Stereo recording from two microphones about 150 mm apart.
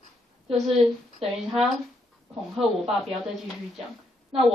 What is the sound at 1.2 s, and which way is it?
Speech, 40° right (ahead or behind).